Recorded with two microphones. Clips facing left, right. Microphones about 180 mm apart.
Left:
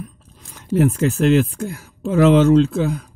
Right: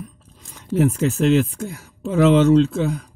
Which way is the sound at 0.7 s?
Centre (ahead or behind).